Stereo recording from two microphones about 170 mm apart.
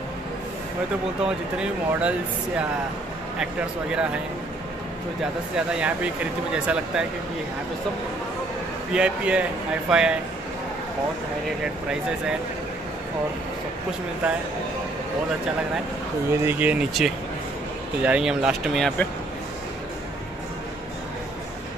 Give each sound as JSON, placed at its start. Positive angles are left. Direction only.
{"t": 1.2, "sound": "speech", "side_deg": -5}
{"t": 5.7, "sound": "speech", "side_deg": -5}
{"t": 8.9, "sound": "speech", "side_deg": -5}
{"t": 11.6, "sound": "speech", "side_deg": -5}
{"t": 14.2, "sound": "speech", "side_deg": -5}
{"t": 16.3, "sound": "speech", "side_deg": -10}